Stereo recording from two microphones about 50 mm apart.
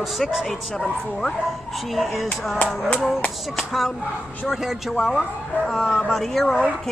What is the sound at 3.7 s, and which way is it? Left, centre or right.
Speech, centre.